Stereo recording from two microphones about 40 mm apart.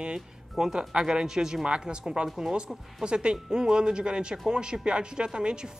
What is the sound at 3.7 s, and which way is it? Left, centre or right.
Speech, right.